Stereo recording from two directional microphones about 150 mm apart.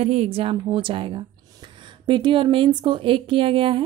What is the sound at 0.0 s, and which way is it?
Speech, 40° right (ahead or behind).